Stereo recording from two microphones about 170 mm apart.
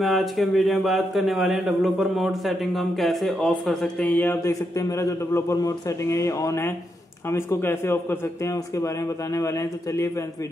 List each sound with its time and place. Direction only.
0.0 s a man's voice: centre (ahead or behind); by 10.2 s 20° left (ahead or behind)